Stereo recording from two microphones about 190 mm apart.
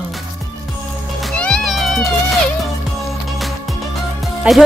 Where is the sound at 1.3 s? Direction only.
5° left (ahead or behind).